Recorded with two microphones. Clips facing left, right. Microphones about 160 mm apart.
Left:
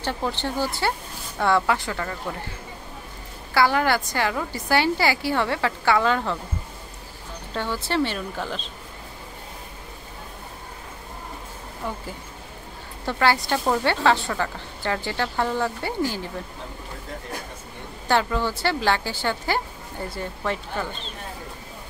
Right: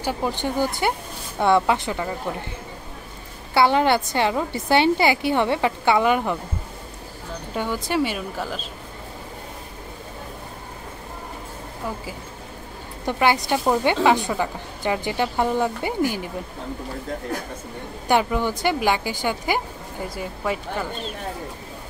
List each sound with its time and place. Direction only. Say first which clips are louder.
0.0 s a woman's voice: right 2 dB; 15° right (ahead or behind)
3.5 s a woman's voice: right 3 dB; 20° right (ahead or behind)
7.5 s a woman's voice: right 1 dB; 15° right (ahead or behind)
13.0 s a woman's voice: right 2 dB; 15° right (ahead or behind)
18.0 s a woman's voice: right 2 dB; 15° right (ahead or behind)